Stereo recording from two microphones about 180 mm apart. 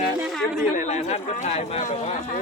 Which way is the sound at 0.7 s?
40° left (ahead or behind).